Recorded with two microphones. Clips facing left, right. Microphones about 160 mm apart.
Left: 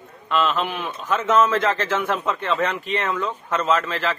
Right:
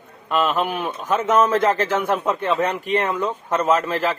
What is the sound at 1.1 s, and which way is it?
Speech, 15° right (ahead or behind).